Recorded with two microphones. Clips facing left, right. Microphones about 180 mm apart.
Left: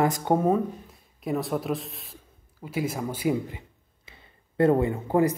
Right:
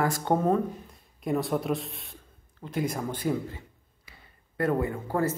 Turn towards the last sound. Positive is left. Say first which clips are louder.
# left 5 dB
turn(degrees=20)  # may be behind; listen again after turning